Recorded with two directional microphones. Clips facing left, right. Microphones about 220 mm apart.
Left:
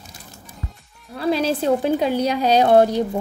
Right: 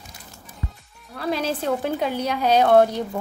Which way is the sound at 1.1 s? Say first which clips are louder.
Left 5 dB; 30° left (ahead or behind).